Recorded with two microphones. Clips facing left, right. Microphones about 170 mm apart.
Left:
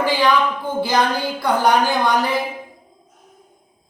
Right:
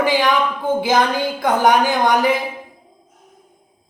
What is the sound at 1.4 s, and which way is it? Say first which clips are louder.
Speech: right 1 dB; 15° right (ahead or behind).